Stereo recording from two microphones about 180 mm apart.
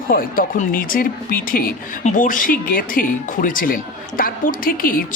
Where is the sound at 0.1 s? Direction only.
50° left (ahead or behind).